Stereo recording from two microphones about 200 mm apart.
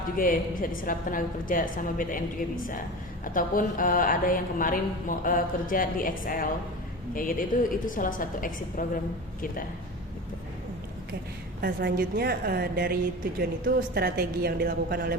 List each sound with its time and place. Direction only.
0.2 s a woman's voice: 45° left (ahead or behind)
3.3 s a woman's voice: 45° left (ahead or behind)
11.6 s a woman's voice: 50° right (ahead or behind)